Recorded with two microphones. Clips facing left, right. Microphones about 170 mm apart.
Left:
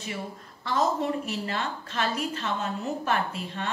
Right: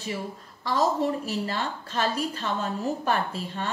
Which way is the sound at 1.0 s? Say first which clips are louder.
Right 2 dB; 35° right (ahead or behind).